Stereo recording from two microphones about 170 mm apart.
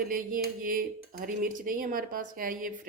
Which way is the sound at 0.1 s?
55° right (ahead or behind).